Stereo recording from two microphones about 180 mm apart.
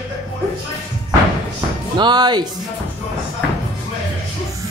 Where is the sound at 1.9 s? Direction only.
25° right (ahead or behind).